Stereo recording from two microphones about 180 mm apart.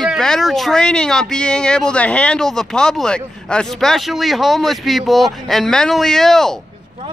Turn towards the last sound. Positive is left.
turn(degrees=0)  # may be behind; listen again after turning